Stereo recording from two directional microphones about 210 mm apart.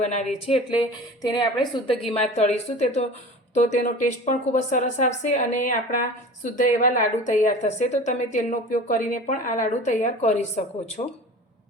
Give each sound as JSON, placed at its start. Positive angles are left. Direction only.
{"t": 0.0, "sound": "a woman's voice", "side_deg": 35}
{"t": 0.7, "sound": "a woman's voice", "side_deg": 20}
{"t": 2.3, "sound": "a woman's voice", "side_deg": 30}